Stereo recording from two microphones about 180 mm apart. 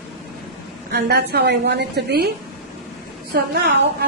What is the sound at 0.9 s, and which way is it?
A woman's voice, 60° right (ahead or behind).